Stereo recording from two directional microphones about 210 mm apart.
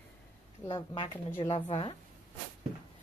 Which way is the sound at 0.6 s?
25° left (ahead or behind).